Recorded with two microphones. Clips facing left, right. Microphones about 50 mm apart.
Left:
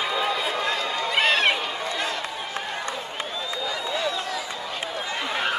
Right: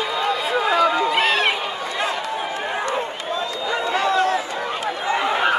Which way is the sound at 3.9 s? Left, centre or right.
Right.